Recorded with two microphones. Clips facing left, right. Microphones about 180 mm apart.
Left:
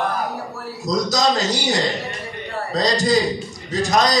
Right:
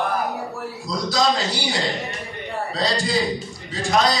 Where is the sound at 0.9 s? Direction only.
45° left (ahead or behind).